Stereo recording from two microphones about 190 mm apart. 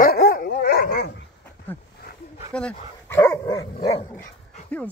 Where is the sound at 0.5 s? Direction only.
55° left (ahead or behind).